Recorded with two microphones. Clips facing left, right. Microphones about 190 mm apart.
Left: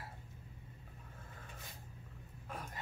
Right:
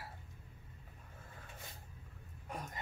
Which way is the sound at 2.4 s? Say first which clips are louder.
Right 2 dB; 15° right (ahead or behind).